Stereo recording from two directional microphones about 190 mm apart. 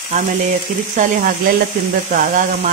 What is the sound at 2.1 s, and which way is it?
Speech, 45° right (ahead or behind).